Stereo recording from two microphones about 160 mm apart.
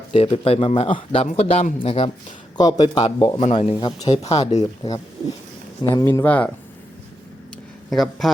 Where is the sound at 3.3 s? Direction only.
45° left (ahead or behind); by 4.1 s 25° left (ahead or behind).